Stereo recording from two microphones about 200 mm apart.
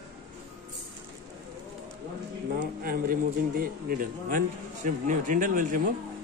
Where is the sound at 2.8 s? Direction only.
45° right (ahead or behind).